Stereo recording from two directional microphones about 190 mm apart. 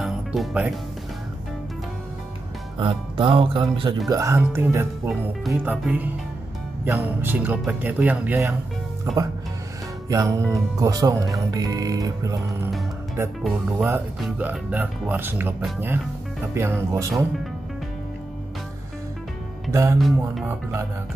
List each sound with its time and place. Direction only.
0.0 s music: centre (ahead or behind)
2.8 s speech: 25° right (ahead or behind)
4.1 s speech: 15° right (ahead or behind)
10.0 s speech: 20° right (ahead or behind)
13.7 s speech: 10° right (ahead or behind)
19.7 s speech: 15° right (ahead or behind)